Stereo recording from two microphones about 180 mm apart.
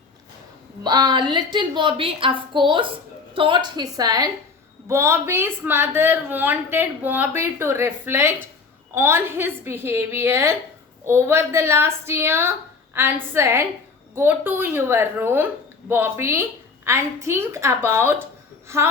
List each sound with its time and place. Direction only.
0.9 s a woman's voice: 25° right (ahead or behind)